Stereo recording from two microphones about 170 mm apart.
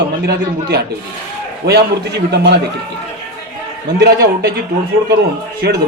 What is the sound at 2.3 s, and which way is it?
Speech, 80° right.